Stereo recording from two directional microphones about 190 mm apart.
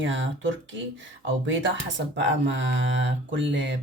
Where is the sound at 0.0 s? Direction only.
80° right.